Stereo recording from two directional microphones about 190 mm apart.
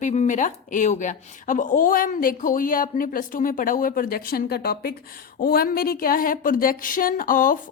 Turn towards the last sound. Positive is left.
turn(degrees=45)  # may be behind; listen again after turning